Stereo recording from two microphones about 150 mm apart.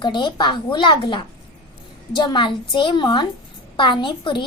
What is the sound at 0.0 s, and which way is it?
A woman's voice, 30° left (ahead or behind).